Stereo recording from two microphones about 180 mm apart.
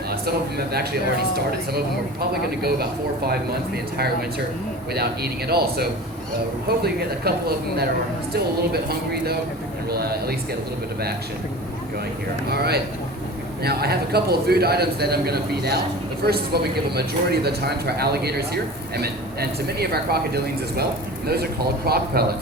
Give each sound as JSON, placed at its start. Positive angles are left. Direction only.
{"t": 0.3, "sound": "a man's voice", "side_deg": -60}
{"t": 4.9, "sound": "a man's voice", "side_deg": -60}
{"t": 12.5, "sound": "a man's voice", "side_deg": -60}